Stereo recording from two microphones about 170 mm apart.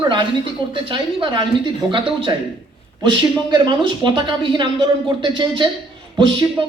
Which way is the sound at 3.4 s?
25° right (ahead or behind).